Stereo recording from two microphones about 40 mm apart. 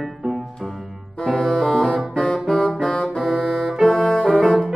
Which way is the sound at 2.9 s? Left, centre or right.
Left.